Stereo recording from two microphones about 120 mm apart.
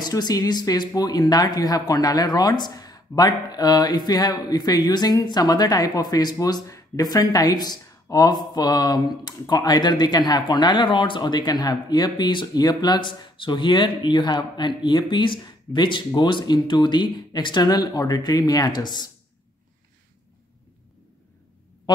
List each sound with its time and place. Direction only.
0.0 s speech: 35° left (ahead or behind)